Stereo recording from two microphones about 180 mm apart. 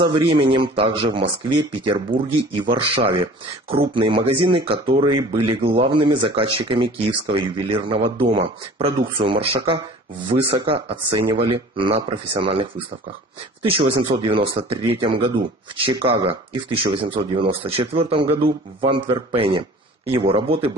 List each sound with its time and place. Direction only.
0.0 s speech: 25° right (ahead or behind)